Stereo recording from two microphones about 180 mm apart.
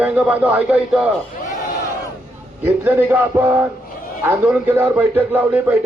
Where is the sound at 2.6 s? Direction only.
10° right (ahead or behind).